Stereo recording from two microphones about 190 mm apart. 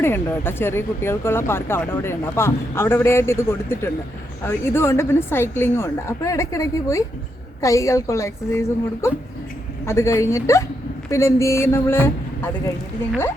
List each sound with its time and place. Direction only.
0.0 s speech: 10° left (ahead or behind)